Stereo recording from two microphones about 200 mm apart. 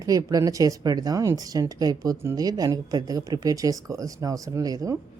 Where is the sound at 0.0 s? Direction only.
20° right (ahead or behind).